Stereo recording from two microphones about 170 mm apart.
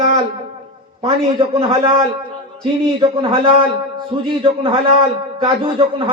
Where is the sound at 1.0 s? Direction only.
35° right (ahead or behind).